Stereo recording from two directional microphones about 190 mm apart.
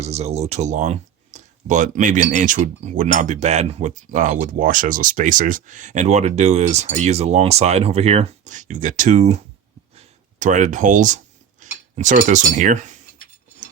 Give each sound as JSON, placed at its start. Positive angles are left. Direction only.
{"t": 0.0, "sound": "speech", "side_deg": -35}
{"t": 9.9, "sound": "a sound", "side_deg": -35}
{"t": 11.6, "sound": "cutlery", "side_deg": -40}
{"t": 11.9, "sound": "speech", "side_deg": -40}